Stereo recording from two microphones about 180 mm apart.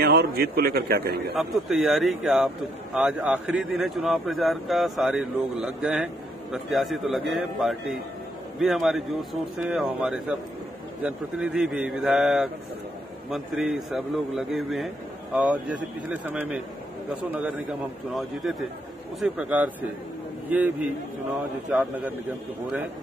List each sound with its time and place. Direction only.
0.0 s a man's voice: 60° right (ahead or behind)
1.3 s a man's voice: centre (ahead or behind)